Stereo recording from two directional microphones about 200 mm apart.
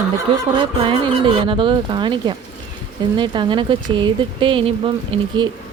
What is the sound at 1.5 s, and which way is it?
Speech, 25° right (ahead or behind).